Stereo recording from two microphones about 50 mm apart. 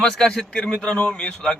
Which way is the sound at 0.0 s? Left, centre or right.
Centre.